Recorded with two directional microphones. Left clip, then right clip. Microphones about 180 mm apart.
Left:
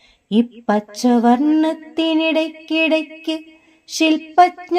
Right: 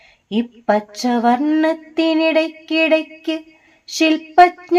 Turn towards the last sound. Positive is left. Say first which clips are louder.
# right 2 dB
turn(degrees=35)  # may be behind; listen again after turning